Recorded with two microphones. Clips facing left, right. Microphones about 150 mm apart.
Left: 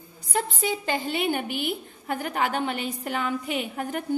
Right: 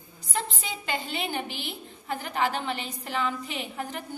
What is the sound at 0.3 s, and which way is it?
A woman's voice, 50° left (ahead or behind).